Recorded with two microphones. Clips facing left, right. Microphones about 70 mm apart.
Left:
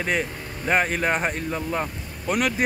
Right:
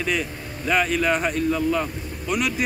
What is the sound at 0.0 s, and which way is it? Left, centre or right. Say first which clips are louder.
Speech: even; left.